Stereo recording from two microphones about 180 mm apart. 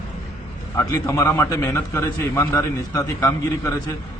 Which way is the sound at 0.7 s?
15° left (ahead or behind).